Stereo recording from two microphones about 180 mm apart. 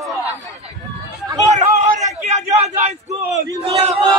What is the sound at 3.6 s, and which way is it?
Battle cry, 35° right (ahead or behind).